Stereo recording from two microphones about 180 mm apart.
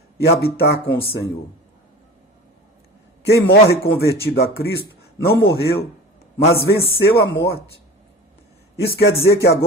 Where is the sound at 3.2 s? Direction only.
65° left (ahead or behind).